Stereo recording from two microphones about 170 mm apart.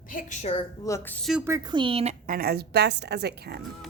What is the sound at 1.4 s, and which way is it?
Speech, 20° right (ahead or behind).